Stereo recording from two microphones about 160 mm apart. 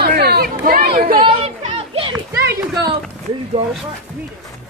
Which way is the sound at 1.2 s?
35° right (ahead or behind).